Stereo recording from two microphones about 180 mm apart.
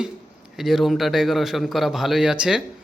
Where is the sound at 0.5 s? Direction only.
Centre (ahead or behind).